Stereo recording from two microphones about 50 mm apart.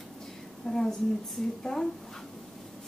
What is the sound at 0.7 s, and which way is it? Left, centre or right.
A woman's voice, centre.